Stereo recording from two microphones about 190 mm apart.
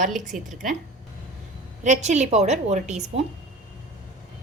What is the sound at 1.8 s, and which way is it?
A woman's voice, 40° right (ahead or behind).